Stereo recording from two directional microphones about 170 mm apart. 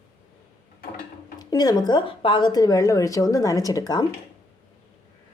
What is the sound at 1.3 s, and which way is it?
Speech, 25° left (ahead or behind).